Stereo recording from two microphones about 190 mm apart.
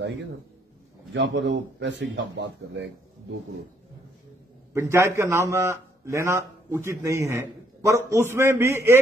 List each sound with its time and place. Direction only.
1.1 s a man's voice: 70° right (ahead or behind)
4.7 s a man's voice: 15° right (ahead or behind)